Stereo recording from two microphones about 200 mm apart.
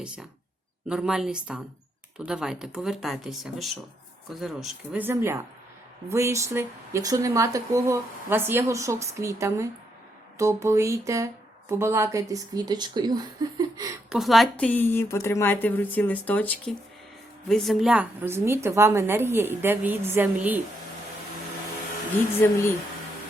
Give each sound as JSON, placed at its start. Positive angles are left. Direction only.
{"t": 0.9, "sound": "speech", "side_deg": -5}
{"t": 14.1, "sound": "a woman's voice", "side_deg": 0}
{"t": 22.4, "sound": "a woman's voice", "side_deg": 10}